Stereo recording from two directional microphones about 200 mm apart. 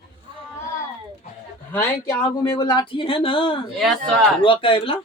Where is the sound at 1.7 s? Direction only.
15° left (ahead or behind).